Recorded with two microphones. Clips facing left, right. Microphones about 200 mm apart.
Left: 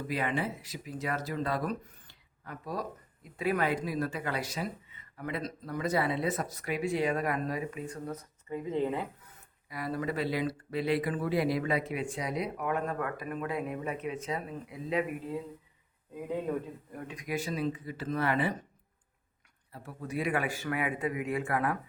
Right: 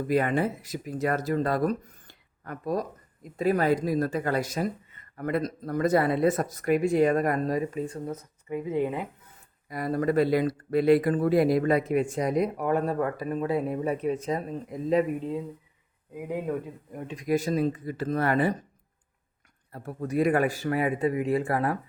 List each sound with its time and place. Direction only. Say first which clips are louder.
0.1 s speech: right 8 dB; 45° right (ahead or behind)
8.0 s speech: right 4 dB; 20° right (ahead or behind)
9.6 s speech: right 7 dB; 45° right (ahead or behind)
16.1 s speech: right 3 dB; 15° right (ahead or behind)
17.2 s speech: right 9 dB; 40° right (ahead or behind)
19.7 s speech: right 8 dB; 45° right (ahead or behind)